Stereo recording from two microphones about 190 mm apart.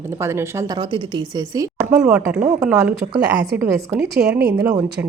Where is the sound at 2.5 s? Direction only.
15° right (ahead or behind).